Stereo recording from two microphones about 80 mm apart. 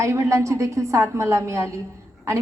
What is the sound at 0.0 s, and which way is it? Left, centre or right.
A woman's voice, right.